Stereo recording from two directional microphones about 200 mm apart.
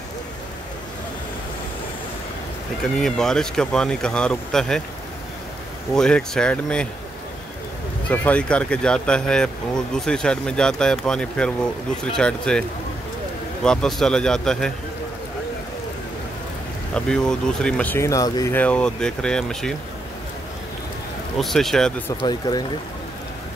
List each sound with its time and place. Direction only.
3.0 s speech: centre (ahead or behind)
5.9 s speech: 5° left (ahead or behind)
8.1 s speech: 5° left (ahead or behind)
13.7 s speech: centre (ahead or behind)
16.9 s speech: 5° left (ahead or behind)
21.4 s speech: centre (ahead or behind)
22.2 s speech: 20° left (ahead or behind)